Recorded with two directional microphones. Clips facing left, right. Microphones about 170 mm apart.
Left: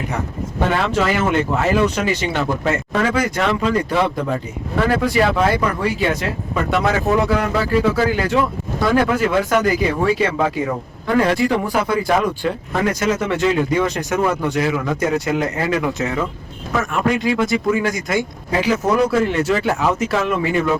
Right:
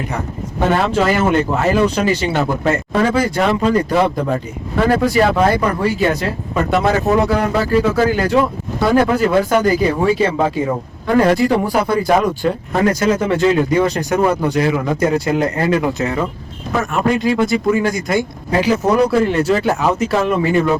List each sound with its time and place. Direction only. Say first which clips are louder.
0.7 s speech: right 4 dB; 40° right (ahead or behind)